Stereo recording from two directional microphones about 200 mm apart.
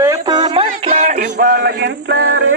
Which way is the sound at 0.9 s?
40° right (ahead or behind).